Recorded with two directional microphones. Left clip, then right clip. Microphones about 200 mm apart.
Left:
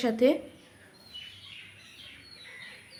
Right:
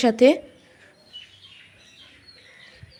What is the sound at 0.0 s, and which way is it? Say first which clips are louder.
Speech: right 8 dB; 35° right (ahead or behind).